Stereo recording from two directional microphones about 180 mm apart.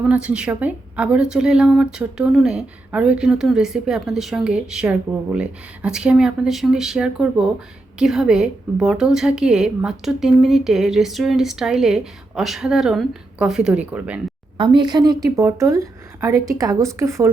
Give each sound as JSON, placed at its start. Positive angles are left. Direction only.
{"t": 0.0, "sound": "a woman's voice", "side_deg": -5}
{"t": 14.6, "sound": "a woman's voice", "side_deg": -25}